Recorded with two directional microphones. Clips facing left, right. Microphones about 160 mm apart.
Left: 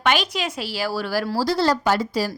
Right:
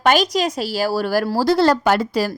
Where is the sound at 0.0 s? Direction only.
40° right (ahead or behind).